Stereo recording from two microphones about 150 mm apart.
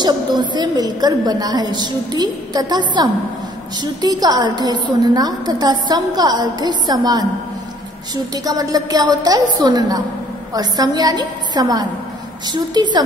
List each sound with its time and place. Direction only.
0.5 s a woman's voice: 30° right (ahead or behind)
8.5 s a woman's voice: 25° right (ahead or behind)